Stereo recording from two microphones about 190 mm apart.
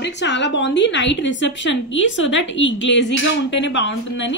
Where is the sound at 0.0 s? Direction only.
70° left (ahead or behind).